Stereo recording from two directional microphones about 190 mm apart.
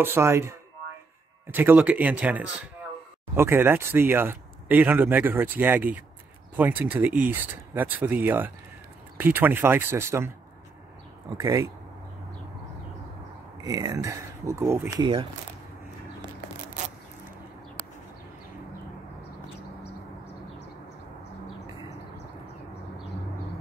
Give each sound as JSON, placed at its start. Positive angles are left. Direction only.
{"t": 0.0, "sound": "speech", "side_deg": -15}
{"t": 13.7, "sound": "speech", "side_deg": -20}